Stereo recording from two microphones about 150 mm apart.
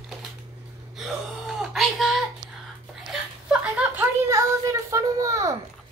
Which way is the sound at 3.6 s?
10° right (ahead or behind).